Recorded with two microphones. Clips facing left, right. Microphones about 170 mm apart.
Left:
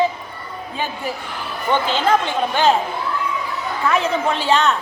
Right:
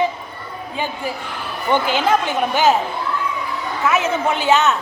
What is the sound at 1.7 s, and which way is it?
A woman's voice, 10° right (ahead or behind).